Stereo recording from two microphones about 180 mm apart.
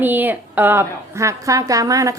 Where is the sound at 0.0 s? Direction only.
10° right (ahead or behind).